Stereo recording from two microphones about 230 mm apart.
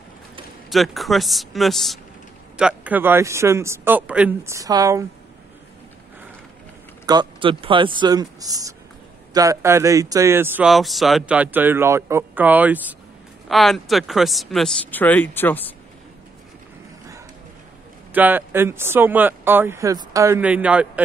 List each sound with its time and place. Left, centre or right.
0.7 s speech: centre
7.1 s speech: centre
18.1 s speech: centre